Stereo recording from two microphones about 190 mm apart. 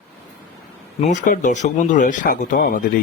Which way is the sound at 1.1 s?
40° left (ahead or behind).